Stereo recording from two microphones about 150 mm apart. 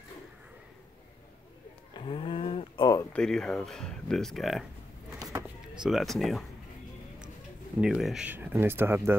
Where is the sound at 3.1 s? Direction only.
5° left (ahead or behind).